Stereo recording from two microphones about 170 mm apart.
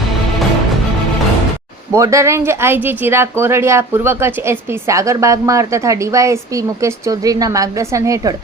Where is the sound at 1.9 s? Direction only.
15° right (ahead or behind).